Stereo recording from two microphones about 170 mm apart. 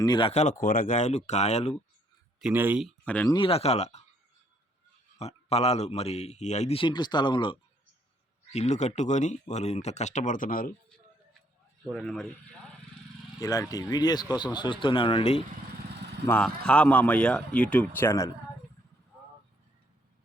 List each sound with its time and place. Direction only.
0.0 s a man's voice: 30° left (ahead or behind)
0.6 s speech: 50° left (ahead or behind)
2.4 s speech: 10° right (ahead or behind)
2.8 s speech: 5° left (ahead or behind)
3.2 s a man's voice: 30° left (ahead or behind)
5.1 s a man's voice: 40° left (ahead or behind)
8.5 s speech: 40° left (ahead or behind)
11.9 s speech: 5° left (ahead or behind)
13.4 s speech: 20° left (ahead or behind)
16.2 s speech: 10° left (ahead or behind)